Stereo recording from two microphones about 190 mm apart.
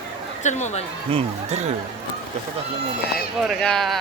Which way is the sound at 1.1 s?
35° right (ahead or behind).